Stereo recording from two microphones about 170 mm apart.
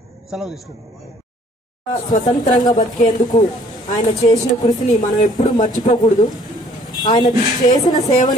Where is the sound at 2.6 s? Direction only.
25° left (ahead or behind).